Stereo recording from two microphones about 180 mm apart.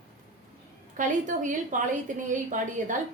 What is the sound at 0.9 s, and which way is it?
A woman's voice, 45° right (ahead or behind).